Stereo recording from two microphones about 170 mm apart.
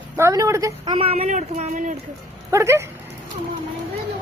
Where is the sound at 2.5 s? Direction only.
15° right (ahead or behind).